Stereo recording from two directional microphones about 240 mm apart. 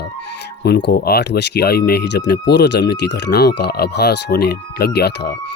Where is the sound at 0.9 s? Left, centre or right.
Left.